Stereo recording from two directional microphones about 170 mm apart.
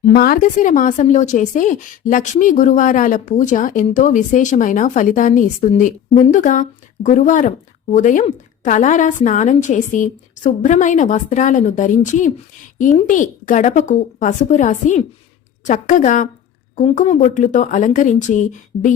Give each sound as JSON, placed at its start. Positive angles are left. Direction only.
{"t": 0.1, "sound": "speech", "side_deg": 60}